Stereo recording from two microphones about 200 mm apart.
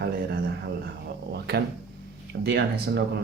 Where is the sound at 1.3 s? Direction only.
55° right (ahead or behind).